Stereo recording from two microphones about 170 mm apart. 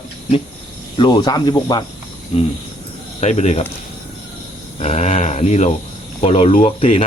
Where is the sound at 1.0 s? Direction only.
25° left (ahead or behind).